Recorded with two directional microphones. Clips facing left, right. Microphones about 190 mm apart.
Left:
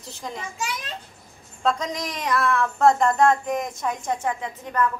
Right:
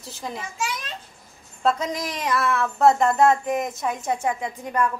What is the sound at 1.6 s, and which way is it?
Speech, 5° right (ahead or behind).